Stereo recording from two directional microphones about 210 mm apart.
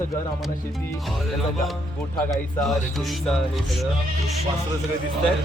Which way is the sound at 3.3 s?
Centre (ahead or behind).